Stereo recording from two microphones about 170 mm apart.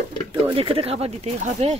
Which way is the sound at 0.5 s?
35° right (ahead or behind).